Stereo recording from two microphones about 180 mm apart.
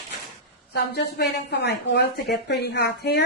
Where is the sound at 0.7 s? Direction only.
65° left (ahead or behind).